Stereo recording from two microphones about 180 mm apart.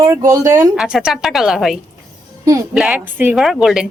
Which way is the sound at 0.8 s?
5° right (ahead or behind).